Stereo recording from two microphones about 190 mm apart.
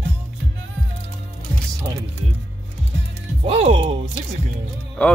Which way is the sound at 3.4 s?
30° right (ahead or behind).